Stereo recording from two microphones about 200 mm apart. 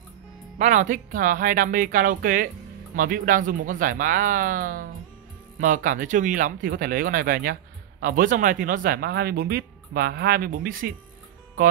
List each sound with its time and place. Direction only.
0.6 s speech: 40° right (ahead or behind)